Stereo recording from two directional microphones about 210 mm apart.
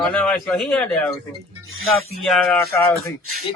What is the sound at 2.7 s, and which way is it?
Speech, 10° left (ahead or behind).